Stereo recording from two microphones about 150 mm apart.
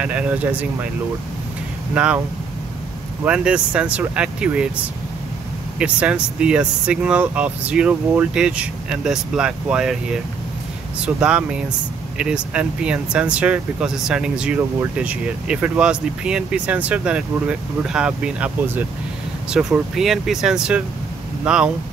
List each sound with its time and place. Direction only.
0.0 s speech: 10° right (ahead or behind)
2.0 s speech: 10° right (ahead or behind)
3.3 s speech: 5° right (ahead or behind)
5.8 s speech: 5° right (ahead or behind)
11.0 s speech: 5° right (ahead or behind)